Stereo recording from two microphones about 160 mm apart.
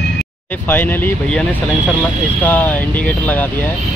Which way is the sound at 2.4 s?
10° left (ahead or behind).